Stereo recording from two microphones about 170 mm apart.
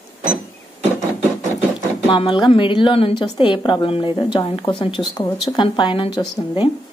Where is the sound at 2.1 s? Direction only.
30° left (ahead or behind).